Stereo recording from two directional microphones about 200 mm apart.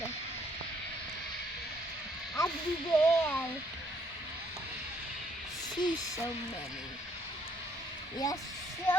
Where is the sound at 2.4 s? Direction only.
15° left (ahead or behind).